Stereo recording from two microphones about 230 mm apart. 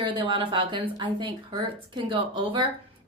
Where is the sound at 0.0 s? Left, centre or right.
Right.